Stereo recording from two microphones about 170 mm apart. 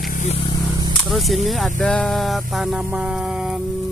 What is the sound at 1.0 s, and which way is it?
Speech, centre (ahead or behind).